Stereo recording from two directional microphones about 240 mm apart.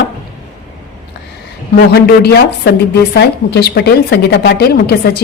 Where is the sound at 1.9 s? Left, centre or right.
Left.